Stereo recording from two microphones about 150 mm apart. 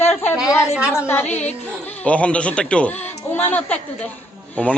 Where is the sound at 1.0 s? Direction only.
15° left (ahead or behind).